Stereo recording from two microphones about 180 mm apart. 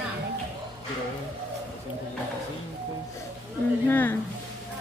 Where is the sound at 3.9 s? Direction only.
10° left (ahead or behind).